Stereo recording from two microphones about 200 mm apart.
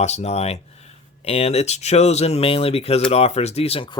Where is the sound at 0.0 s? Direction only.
35° left (ahead or behind).